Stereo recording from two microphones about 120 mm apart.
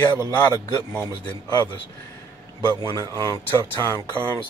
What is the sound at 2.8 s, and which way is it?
Speech, 30° right (ahead or behind).